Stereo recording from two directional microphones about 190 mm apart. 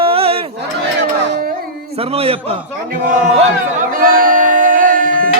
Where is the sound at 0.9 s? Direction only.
60° right (ahead or behind).